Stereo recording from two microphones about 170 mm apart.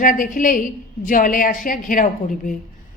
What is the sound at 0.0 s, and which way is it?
A woman's voice, 50° left (ahead or behind).